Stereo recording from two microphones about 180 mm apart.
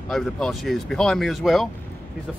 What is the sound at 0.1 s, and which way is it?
Speech, centre (ahead or behind).